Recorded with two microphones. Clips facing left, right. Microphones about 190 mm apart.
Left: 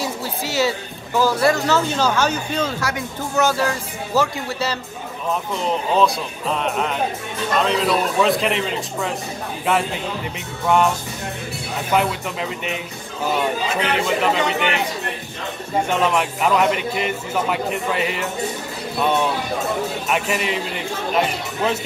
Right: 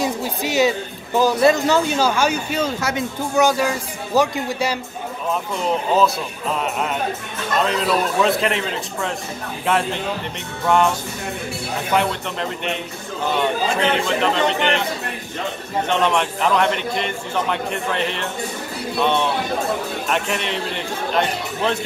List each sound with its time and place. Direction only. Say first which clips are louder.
0.0 s speech: right 3 dB; 15° right (ahead or behind)
5.9 s a man's voice: even; centre (ahead or behind)
11.9 s a man's voice: left 1 dB; 5° left (ahead or behind)
13.9 s a man's voice: even; 5° left (ahead or behind)
15.9 s a man's voice: right 2 dB; 5° left (ahead or behind)